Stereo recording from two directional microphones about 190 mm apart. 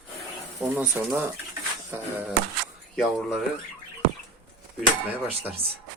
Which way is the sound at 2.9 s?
Centre (ahead or behind).